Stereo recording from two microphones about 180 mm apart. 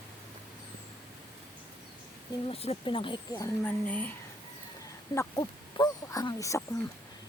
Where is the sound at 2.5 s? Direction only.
35° left (ahead or behind).